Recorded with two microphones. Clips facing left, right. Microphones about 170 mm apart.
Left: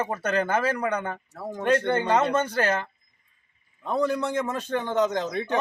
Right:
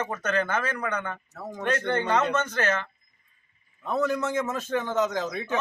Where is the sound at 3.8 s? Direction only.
15° left (ahead or behind).